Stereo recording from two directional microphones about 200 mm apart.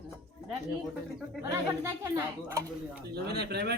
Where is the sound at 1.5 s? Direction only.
15° right (ahead or behind).